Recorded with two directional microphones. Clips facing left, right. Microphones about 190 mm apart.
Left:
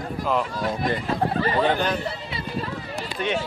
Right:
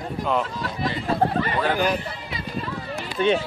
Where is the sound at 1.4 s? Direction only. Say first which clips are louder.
Left 2 dB; 30° left (ahead or behind).